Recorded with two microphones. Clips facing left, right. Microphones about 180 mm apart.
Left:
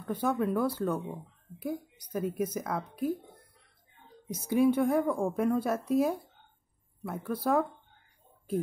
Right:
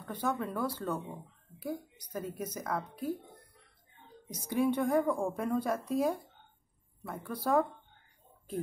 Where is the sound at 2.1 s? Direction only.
10° left (ahead or behind).